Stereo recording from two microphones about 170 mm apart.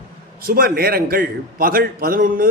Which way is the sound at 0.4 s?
60° right (ahead or behind).